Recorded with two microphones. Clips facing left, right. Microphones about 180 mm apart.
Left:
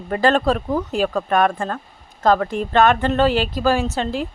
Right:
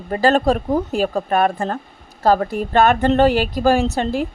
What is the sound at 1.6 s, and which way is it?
Speech, 25° right (ahead or behind).